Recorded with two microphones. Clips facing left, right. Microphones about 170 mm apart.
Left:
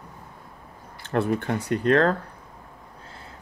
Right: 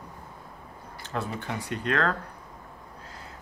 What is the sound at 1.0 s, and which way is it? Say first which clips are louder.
Speech: left 9 dB; 60° left (ahead or behind).